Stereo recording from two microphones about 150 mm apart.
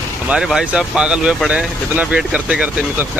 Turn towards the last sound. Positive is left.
turn(degrees=-10)  # may be behind; listen again after turning